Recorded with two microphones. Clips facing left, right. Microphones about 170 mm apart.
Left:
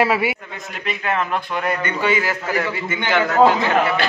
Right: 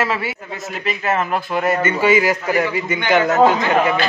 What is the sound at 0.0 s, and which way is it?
Speech, 15° left (ahead or behind).